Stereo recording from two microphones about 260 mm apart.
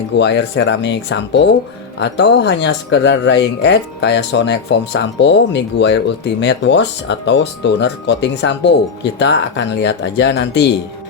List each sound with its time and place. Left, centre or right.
0.2 s speech: left